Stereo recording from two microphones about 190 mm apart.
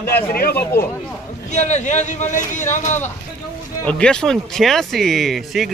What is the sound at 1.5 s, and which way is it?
Speech, 40° left (ahead or behind).